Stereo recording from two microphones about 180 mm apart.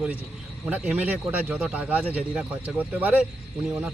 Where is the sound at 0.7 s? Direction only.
5° right (ahead or behind).